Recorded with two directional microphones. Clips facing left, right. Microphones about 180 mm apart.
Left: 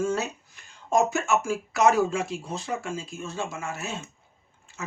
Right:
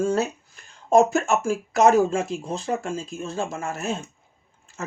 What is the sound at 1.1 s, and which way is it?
Speech, 45° right (ahead or behind).